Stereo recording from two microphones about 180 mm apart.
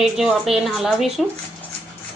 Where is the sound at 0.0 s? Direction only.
5° right (ahead or behind).